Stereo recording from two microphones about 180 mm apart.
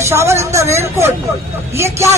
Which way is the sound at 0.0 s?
15° right (ahead or behind).